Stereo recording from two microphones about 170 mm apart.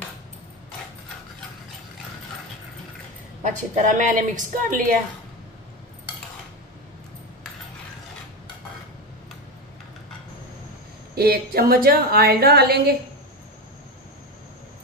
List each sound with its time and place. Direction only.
3.4 s a woman's voice: 45° right (ahead or behind)
11.1 s a woman's voice: 65° right (ahead or behind)